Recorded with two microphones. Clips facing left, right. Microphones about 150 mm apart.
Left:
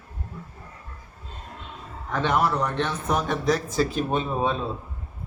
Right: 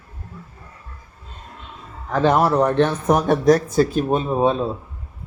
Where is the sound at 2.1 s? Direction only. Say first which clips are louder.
Right 7 dB; 35° right (ahead or behind).